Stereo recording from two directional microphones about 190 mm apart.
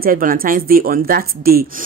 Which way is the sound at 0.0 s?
45° right (ahead or behind).